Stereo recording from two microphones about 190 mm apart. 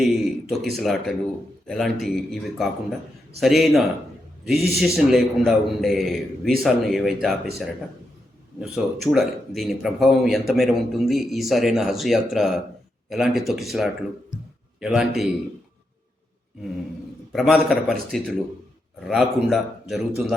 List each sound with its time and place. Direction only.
0.0 s speech: centre (ahead or behind)
8.6 s speech: centre (ahead or behind)
17.3 s speech: centre (ahead or behind)